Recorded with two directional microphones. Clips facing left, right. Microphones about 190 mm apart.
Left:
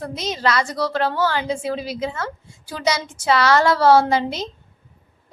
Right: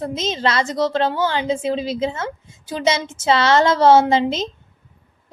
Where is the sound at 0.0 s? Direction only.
20° right (ahead or behind).